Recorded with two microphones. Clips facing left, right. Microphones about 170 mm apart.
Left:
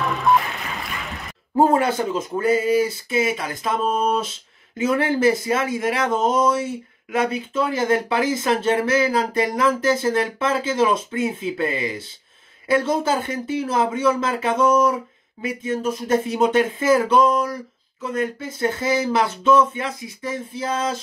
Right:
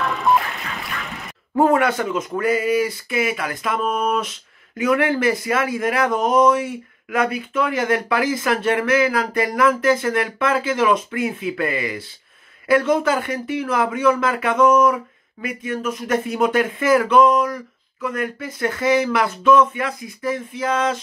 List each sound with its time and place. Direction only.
1.6 s speech: 30° left (ahead or behind)